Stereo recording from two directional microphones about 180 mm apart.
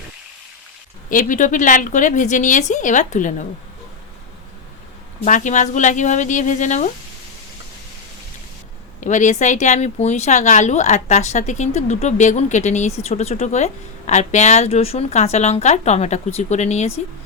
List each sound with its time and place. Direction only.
1.1 s a woman's voice: 45° left (ahead or behind)
5.2 s a woman's voice: 45° left (ahead or behind)
9.0 s speech: 40° left (ahead or behind)